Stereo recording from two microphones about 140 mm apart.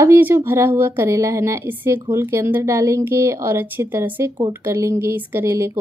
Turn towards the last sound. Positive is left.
turn(degrees=-20)  # may be behind; listen again after turning